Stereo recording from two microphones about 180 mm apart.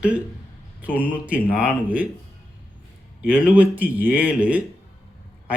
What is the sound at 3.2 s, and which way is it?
A man's voice, 5° right (ahead or behind).